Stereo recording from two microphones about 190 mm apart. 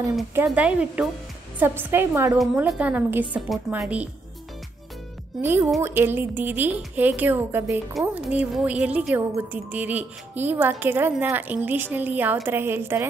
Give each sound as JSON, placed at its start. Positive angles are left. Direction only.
{"t": 0.3, "sound": "a woman's voice", "side_deg": -10}
{"t": 5.4, "sound": "a woman's voice", "side_deg": -10}